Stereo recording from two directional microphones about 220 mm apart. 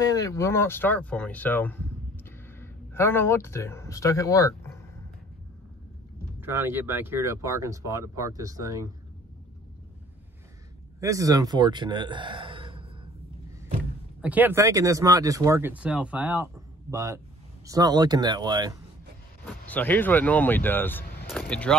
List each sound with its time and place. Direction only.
0.0 s speech: 15° left (ahead or behind)
6.4 s speech: 10° right (ahead or behind)
11.0 s speech: 15° right (ahead or behind)
14.2 s speech: 10° right (ahead or behind)
19.4 s speech: 5° left (ahead or behind)